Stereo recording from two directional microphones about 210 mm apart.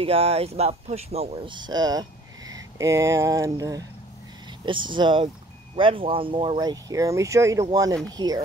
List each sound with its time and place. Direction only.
0.0 s speech: 25° right (ahead or behind)